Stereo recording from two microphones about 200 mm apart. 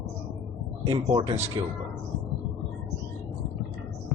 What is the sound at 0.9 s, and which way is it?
Speech, 25° right (ahead or behind).